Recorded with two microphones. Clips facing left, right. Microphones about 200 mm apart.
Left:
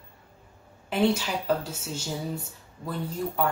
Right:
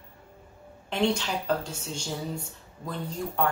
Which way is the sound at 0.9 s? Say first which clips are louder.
Left 2 dB; 5° left (ahead or behind).